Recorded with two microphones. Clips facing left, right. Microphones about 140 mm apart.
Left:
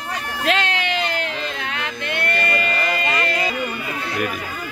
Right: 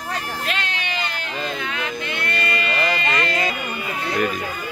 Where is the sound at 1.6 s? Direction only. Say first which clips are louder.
Right 1 dB; 70° left (ahead or behind); by 2.7 s 45° left (ahead or behind).